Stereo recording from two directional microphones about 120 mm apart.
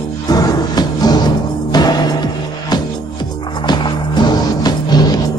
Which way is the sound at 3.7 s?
35° left (ahead or behind).